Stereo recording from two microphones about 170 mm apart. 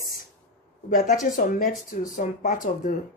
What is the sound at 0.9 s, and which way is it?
Speech, 50° left (ahead or behind).